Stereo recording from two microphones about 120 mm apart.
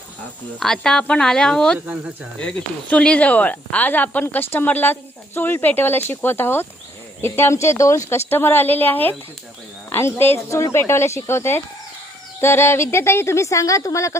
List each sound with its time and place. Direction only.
0.6 s speech: 5° left (ahead or behind); by 14.2 s 25° left (ahead or behind)